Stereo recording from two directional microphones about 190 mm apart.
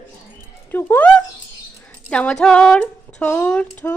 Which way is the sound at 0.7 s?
10° left (ahead or behind).